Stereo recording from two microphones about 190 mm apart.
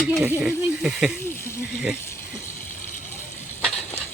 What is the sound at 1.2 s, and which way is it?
Speech, 15° left (ahead or behind).